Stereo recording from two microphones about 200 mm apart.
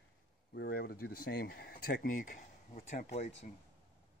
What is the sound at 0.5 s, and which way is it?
Speech, 50° left (ahead or behind).